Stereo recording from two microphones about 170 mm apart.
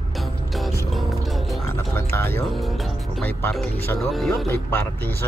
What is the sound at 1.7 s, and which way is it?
Music, 15° left (ahead or behind).